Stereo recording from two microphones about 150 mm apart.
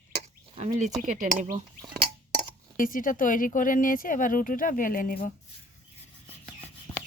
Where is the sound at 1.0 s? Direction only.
55° right (ahead or behind).